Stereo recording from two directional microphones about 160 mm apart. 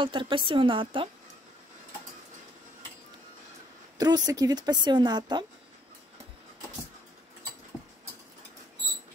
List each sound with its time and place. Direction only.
0.0 s a woman's voice: 30° right (ahead or behind)
4.0 s a woman's voice: 25° right (ahead or behind)